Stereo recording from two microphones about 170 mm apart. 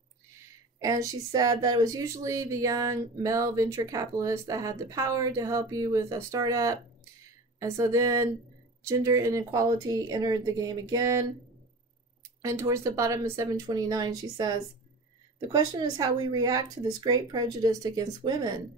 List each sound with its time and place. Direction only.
0.7 s a woman's voice: 20° right (ahead or behind)
12.4 s speech: 20° right (ahead or behind)